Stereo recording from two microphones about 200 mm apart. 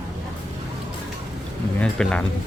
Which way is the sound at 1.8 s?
5° left (ahead or behind).